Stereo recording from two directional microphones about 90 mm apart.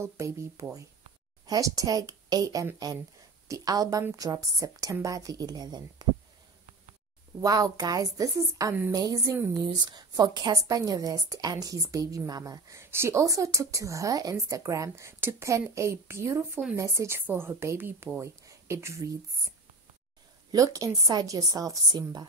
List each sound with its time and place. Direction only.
0.0 s a woman's voice: 35° right (ahead or behind)
1.4 s a woman's voice: 45° right (ahead or behind)
7.4 s a woman's voice: 45° right (ahead or behind)
9.6 s speech: 55° right (ahead or behind)
10.6 s a woman's voice: 40° right (ahead or behind); by 18.2 s 25° right (ahead or behind)
18.2 s speech: 35° right (ahead or behind)
20.5 s a woman's voice: 40° right (ahead or behind)